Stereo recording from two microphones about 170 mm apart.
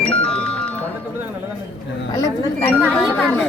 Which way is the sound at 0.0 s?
5° left (ahead or behind).